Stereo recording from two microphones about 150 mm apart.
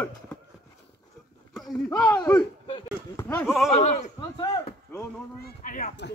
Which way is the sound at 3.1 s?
15° left (ahead or behind).